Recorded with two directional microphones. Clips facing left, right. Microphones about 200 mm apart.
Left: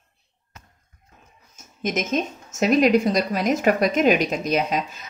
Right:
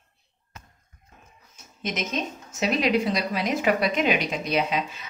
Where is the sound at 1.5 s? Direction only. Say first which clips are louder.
Left 6 dB; 45° left (ahead or behind).